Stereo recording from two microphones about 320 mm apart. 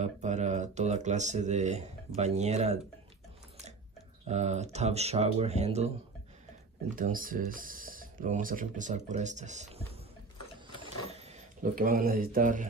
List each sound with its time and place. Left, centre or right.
0.0 s speech: right
4.3 s speech: right
7.0 s speech: right
10.8 s a sound: centre